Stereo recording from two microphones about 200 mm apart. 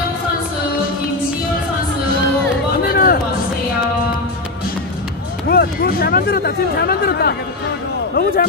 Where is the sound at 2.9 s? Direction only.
45° left (ahead or behind).